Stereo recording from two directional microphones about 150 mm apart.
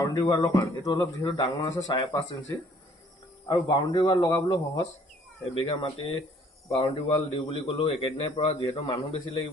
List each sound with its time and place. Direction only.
0.0 s speech: 25° left (ahead or behind)
3.4 s a man's voice: 30° left (ahead or behind)